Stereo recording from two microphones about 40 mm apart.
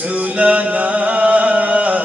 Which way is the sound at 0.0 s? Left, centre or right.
Right.